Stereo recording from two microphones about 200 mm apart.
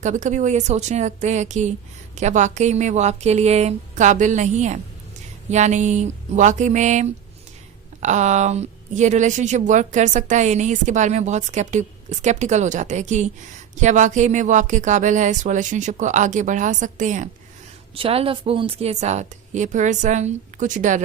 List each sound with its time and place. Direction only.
0.0 s a woman's voice: 40° right (ahead or behind)
17.9 s a woman's voice: 30° right (ahead or behind)